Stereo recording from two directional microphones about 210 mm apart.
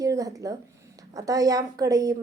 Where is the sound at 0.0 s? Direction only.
15° right (ahead or behind).